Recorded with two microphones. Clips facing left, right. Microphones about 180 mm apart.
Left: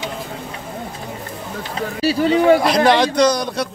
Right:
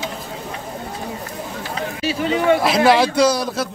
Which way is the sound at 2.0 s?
35° left (ahead or behind).